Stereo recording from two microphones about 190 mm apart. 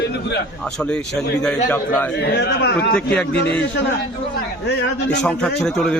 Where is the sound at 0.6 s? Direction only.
5° left (ahead or behind).